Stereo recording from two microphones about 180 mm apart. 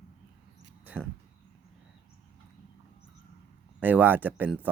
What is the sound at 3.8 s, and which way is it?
Speech, 10° right (ahead or behind).